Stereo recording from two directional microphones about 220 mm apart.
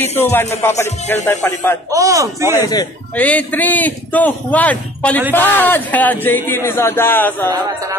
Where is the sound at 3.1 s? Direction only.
5° left (ahead or behind).